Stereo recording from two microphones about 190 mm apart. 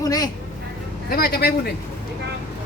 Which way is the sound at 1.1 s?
50° left (ahead or behind).